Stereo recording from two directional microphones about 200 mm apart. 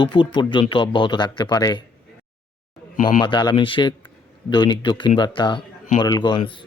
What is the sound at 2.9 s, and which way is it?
Speech, 40° left (ahead or behind).